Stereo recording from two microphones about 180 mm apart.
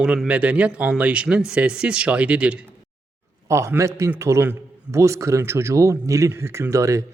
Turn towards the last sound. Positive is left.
turn(degrees=-15)  # may be behind; listen again after turning